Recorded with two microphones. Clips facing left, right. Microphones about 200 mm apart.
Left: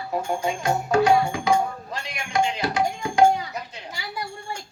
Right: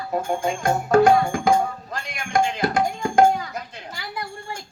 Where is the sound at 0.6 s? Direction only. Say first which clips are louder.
Right 5 dB; 50° right (ahead or behind).